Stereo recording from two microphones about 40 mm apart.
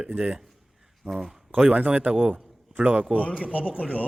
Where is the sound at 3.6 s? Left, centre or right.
Right.